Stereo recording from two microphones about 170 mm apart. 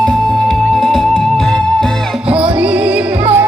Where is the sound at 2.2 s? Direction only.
5° right (ahead or behind).